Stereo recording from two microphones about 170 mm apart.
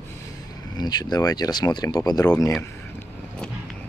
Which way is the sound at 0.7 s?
25° left (ahead or behind).